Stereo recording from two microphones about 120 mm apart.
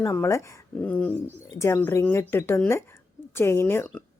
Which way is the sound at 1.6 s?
25° left (ahead or behind).